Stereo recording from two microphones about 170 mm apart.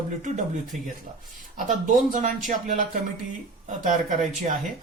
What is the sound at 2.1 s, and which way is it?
Speech, 50° right (ahead or behind).